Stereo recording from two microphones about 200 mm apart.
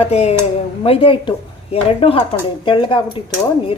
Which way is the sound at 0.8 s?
30° left (ahead or behind).